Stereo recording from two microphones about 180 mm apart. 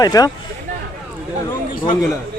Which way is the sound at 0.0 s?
20° left (ahead or behind).